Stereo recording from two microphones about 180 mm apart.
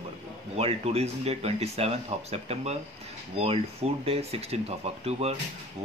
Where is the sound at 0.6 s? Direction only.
35° right (ahead or behind).